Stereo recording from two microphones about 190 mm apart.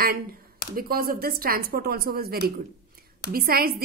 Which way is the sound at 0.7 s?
50° right (ahead or behind).